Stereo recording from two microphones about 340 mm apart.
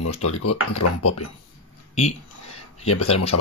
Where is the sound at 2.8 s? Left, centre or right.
Left.